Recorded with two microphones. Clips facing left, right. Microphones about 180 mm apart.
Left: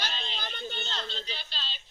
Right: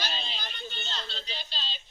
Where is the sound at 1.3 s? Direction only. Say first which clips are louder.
Right 1 dB; 15° right (ahead or behind).